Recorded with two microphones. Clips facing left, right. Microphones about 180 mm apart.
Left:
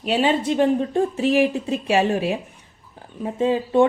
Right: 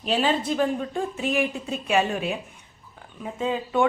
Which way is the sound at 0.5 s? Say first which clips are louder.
Left 6 dB; 30° left (ahead or behind).